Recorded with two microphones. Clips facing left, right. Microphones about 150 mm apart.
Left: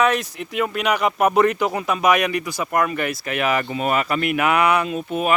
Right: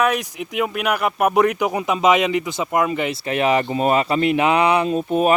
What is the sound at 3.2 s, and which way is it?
A man's voice, 30° right (ahead or behind).